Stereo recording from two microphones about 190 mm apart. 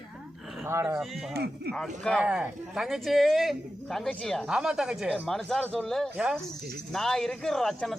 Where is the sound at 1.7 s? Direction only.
5° left (ahead or behind).